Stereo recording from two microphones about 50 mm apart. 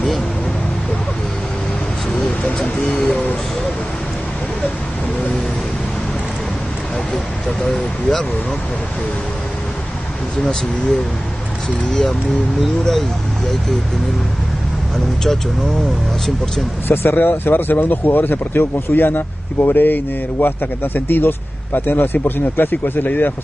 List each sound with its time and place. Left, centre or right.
7.6 s speech: centre
11.9 s speech: centre
16.8 s speech: left
17.2 s speech: left